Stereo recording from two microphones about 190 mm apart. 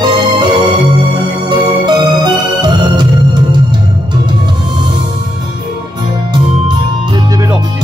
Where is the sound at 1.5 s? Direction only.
20° right (ahead or behind).